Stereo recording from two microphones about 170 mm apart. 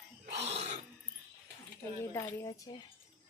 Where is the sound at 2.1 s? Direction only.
20° left (ahead or behind).